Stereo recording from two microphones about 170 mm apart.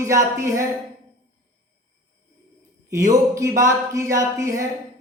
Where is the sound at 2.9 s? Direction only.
20° right (ahead or behind).